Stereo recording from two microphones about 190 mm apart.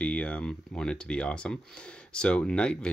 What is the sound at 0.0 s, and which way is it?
Speech, 5° left (ahead or behind).